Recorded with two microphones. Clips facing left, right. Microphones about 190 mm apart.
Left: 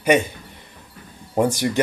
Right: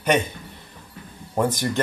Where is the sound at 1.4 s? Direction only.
10° left (ahead or behind).